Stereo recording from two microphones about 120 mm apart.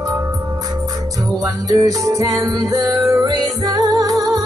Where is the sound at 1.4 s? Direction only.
30° right (ahead or behind).